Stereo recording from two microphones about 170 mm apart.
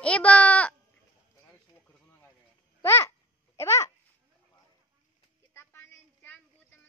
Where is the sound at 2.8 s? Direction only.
15° left (ahead or behind).